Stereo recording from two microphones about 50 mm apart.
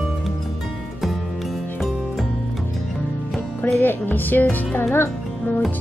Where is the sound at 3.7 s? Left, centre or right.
Left.